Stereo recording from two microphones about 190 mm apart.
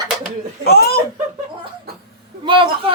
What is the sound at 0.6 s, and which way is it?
Speech, 55° left (ahead or behind).